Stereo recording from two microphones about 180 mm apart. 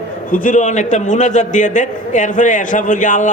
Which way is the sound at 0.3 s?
45° left (ahead or behind).